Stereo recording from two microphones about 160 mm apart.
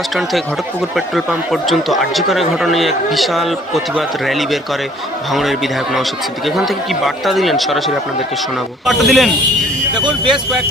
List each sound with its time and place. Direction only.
0.9 s a man's voice: centre (ahead or behind)
10.0 s speech: 30° right (ahead or behind)